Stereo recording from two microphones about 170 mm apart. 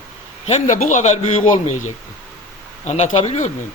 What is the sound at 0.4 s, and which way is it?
Speech, 40° left (ahead or behind).